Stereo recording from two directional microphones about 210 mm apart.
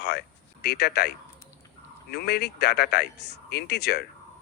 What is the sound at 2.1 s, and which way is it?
Speech, 50° left (ahead or behind).